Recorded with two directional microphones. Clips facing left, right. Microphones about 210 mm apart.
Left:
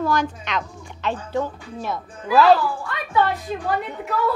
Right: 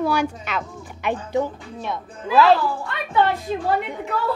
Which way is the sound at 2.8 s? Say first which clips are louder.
Right 1 dB; 25° right (ahead or behind).